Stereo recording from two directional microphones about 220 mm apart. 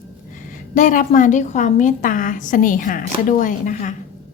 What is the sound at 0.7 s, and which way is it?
A woman's voice, 35° left (ahead or behind).